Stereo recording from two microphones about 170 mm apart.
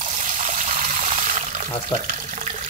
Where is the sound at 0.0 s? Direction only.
45° right (ahead or behind).